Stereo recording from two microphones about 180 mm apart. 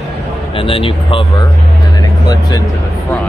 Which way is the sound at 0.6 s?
30° left (ahead or behind).